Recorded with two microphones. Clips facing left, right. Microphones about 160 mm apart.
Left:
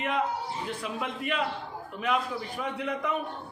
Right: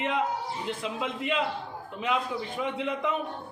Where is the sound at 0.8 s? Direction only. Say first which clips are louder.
Right 2 dB; 20° right (ahead or behind).